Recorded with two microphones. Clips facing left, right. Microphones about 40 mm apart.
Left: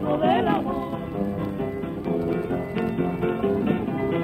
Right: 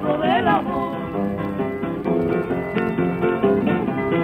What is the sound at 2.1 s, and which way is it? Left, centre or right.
Music, right.